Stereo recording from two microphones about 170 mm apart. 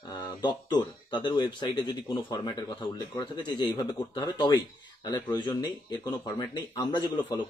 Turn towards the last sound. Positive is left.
turn(degrees=25)  # may be behind; listen again after turning